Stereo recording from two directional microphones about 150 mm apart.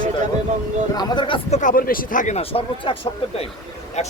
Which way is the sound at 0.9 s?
30° left (ahead or behind).